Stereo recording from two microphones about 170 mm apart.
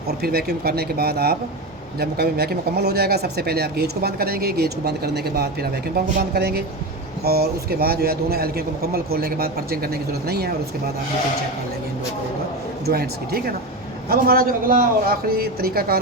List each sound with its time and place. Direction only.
0.1 s speech: 65° right (ahead or behind)
12.8 s speech: 65° right (ahead or behind)